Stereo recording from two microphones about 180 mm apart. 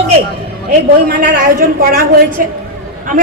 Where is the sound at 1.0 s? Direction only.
50° right (ahead or behind).